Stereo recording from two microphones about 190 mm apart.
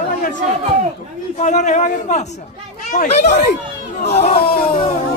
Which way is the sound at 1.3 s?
40° left (ahead or behind).